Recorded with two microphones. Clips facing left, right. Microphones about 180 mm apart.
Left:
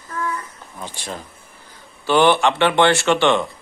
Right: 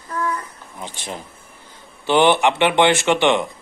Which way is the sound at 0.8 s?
20° right (ahead or behind).